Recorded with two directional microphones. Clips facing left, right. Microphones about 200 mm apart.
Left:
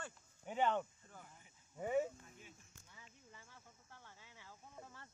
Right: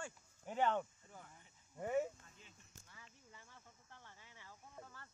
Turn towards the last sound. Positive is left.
turn(degrees=25)  # may be behind; listen again after turning